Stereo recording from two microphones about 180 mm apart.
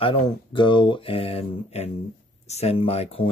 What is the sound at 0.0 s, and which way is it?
Speech, 30° left (ahead or behind).